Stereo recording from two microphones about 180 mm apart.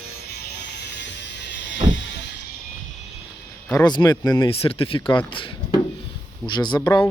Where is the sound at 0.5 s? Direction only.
70° left (ahead or behind).